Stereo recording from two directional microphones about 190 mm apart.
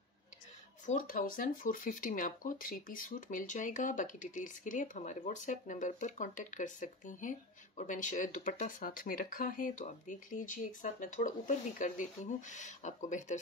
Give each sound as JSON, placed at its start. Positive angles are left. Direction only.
{"t": 0.8, "sound": "speech", "side_deg": 45}